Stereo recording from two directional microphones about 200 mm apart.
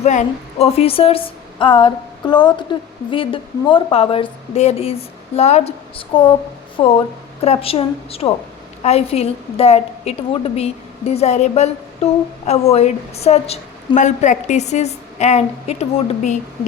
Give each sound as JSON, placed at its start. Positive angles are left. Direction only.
{"t": 0.0, "sound": "a woman's voice", "side_deg": 35}
{"t": 7.4, "sound": "a woman's voice", "side_deg": 30}
{"t": 12.7, "sound": "a woman's voice", "side_deg": 30}